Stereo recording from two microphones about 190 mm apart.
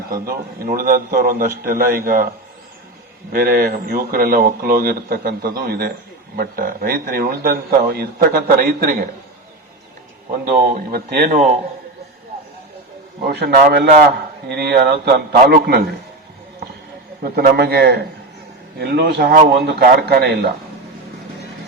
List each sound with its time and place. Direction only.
0.1 s speech: 50° right (ahead or behind)
3.3 s speech: 55° right (ahead or behind)
10.9 s speech: 50° right (ahead or behind)
13.2 s a man's voice: 55° right (ahead or behind)
17.2 s a man's voice: 55° right (ahead or behind)